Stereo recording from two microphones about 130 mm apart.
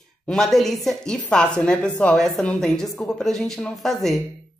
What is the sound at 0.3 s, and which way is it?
A woman's voice, centre (ahead or behind).